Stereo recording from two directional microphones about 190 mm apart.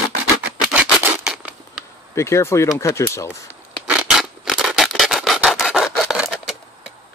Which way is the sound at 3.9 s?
5° right (ahead or behind).